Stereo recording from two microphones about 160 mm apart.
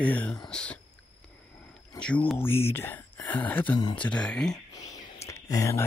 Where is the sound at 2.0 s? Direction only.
5° left (ahead or behind).